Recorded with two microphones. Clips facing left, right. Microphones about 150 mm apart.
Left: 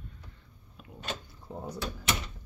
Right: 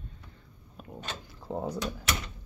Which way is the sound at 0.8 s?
40° right (ahead or behind).